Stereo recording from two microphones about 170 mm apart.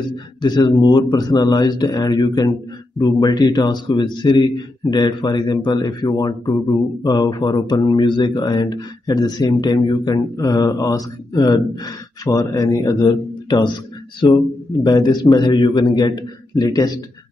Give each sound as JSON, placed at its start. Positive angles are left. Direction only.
{"t": 0.1, "sound": "speech", "side_deg": 25}
{"t": 14.2, "sound": "speech", "side_deg": 20}